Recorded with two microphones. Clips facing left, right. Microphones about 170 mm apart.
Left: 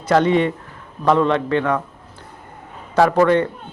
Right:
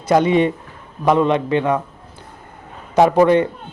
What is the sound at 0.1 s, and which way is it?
A man's voice, 15° right (ahead or behind).